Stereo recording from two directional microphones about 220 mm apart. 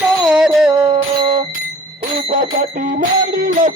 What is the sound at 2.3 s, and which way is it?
Bicycle bell, 30° right (ahead or behind).